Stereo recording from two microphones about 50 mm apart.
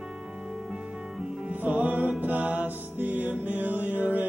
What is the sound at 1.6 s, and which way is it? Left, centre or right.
Music, right.